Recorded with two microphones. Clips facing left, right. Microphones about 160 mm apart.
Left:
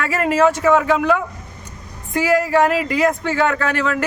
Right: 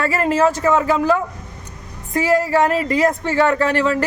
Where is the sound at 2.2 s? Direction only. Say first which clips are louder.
Even; 30° right (ahead or behind).